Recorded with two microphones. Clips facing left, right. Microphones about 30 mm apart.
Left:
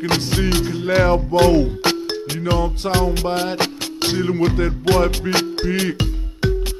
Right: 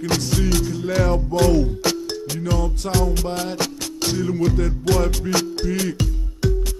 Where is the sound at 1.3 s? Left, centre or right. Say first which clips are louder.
Left 3 dB; left.